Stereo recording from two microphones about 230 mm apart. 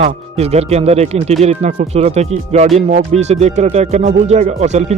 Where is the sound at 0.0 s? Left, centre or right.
Right.